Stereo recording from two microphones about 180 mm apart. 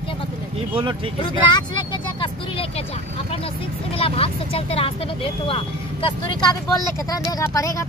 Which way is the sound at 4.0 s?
30° left (ahead or behind).